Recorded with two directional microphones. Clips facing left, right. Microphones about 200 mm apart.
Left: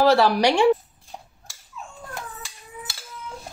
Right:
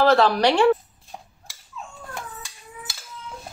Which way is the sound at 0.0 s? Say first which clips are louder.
Even; 10° left (ahead or behind).